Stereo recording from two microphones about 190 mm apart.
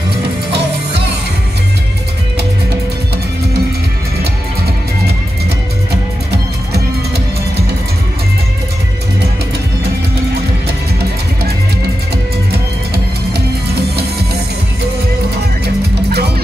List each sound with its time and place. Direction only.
13.7 s music: 55° right (ahead or behind)
15.6 s music: 60° right (ahead or behind)